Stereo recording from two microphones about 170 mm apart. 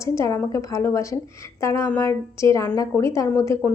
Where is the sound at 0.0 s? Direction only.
15° left (ahead or behind).